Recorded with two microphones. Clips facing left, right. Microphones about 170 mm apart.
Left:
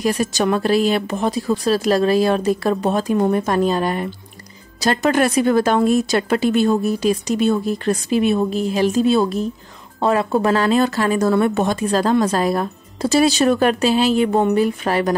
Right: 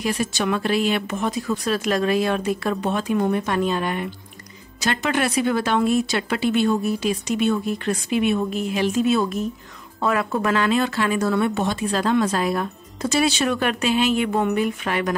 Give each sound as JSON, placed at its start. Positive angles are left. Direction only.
{"t": 0.0, "sound": "speech", "side_deg": 40}